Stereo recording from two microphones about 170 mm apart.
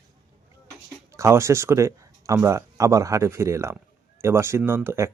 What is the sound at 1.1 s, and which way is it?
Speech, 15° right (ahead or behind).